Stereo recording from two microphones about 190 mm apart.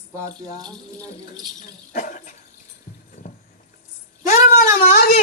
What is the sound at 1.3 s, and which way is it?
Speech, 45° left (ahead or behind).